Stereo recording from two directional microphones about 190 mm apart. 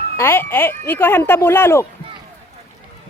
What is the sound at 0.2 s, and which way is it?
Speech, 10° left (ahead or behind).